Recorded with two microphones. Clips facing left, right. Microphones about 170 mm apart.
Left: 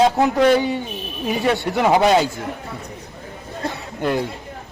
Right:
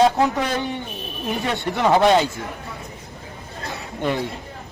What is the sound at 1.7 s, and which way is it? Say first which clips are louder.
Speech: even; 10° left (ahead or behind).